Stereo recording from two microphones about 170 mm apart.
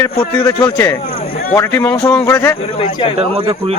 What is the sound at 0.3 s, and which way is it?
Speech, 10° left (ahead or behind).